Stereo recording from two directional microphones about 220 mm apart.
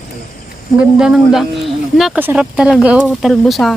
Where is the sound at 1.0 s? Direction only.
Centre (ahead or behind).